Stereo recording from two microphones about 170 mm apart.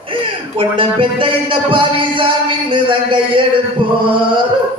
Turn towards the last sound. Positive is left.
turn(degrees=-30)  # may be behind; listen again after turning